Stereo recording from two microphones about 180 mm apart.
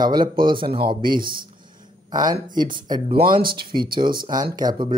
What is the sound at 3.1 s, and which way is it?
Speech, 50° right (ahead or behind).